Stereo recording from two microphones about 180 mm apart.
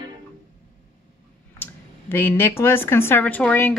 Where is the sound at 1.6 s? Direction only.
10° left (ahead or behind).